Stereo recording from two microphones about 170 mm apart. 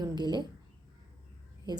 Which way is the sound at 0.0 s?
25° right (ahead or behind).